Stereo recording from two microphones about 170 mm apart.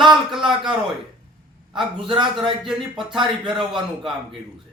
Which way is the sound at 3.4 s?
30° right (ahead or behind).